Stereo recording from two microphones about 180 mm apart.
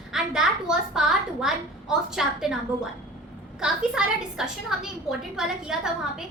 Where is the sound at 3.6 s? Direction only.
5° right (ahead or behind).